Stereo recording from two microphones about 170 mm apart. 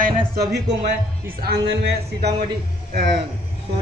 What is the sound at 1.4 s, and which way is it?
Speech, 80° right.